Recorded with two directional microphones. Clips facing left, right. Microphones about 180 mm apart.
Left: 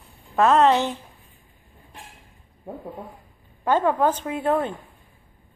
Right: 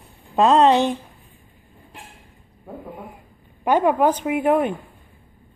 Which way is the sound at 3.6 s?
15° right (ahead or behind).